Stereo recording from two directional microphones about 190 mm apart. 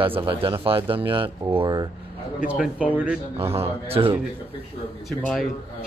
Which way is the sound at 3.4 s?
30° right (ahead or behind).